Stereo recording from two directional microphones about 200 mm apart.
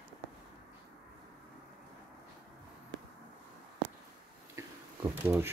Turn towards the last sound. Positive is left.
turn(degrees=-10)  # may be behind; listen again after turning